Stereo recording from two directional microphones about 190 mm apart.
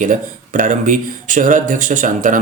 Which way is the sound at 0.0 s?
45° right (ahead or behind).